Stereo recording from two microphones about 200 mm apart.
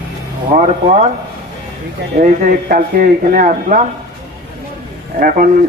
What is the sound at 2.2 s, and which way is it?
A man's voice, 45° right (ahead or behind).